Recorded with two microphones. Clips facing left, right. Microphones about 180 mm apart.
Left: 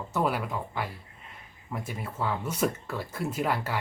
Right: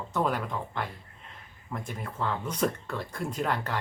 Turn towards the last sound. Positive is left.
turn(degrees=5)  # may be behind; listen again after turning